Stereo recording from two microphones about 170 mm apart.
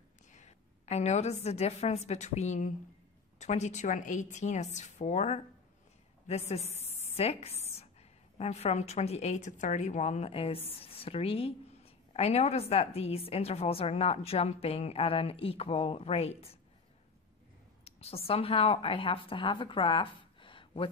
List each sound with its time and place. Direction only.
0.3 s a woman's voice: 40° left (ahead or behind)
17.8 s a woman's voice: 35° left (ahead or behind)